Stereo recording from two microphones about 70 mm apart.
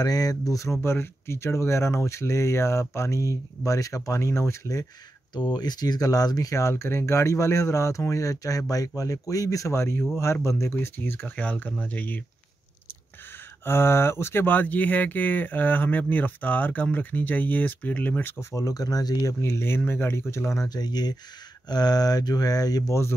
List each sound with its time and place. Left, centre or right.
0.0 s speech: left
0.7 s speech: left
5.3 s speech: left
13.7 s speech: left
18.4 s speech: left
19.4 s speech: left